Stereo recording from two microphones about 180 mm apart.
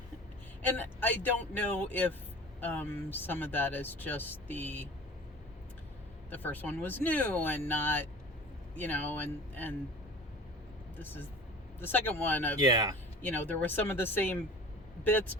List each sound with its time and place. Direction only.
0.8 s speech: 10° left (ahead or behind)
6.3 s speech: 10° left (ahead or behind)
10.9 s speech: 10° left (ahead or behind)
12.5 s speech: 20° right (ahead or behind)
13.2 s speech: 10° left (ahead or behind)